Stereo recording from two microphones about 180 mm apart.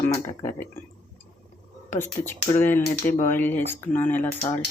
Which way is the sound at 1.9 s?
10° left (ahead or behind).